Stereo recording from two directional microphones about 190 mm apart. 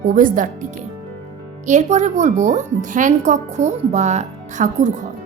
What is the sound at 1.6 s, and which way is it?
A child's voice, 40° right (ahead or behind).